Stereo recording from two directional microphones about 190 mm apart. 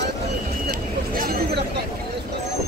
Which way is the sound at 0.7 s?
50° right (ahead or behind).